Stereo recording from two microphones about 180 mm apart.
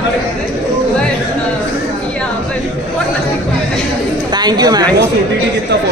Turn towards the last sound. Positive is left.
turn(degrees=-20)  # may be behind; listen again after turning